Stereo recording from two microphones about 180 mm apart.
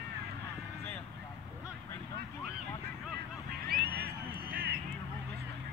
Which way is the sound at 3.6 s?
60° right (ahead or behind).